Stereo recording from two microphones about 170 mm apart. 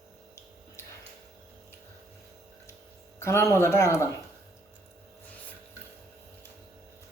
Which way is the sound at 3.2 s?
15° left (ahead or behind).